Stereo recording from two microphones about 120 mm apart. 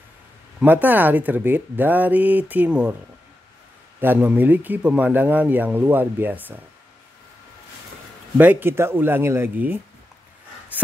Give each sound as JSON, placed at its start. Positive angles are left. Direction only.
{"t": 0.6, "sound": "speech", "side_deg": -15}
{"t": 4.0, "sound": "speech", "side_deg": -15}
{"t": 8.4, "sound": "speech", "side_deg": -15}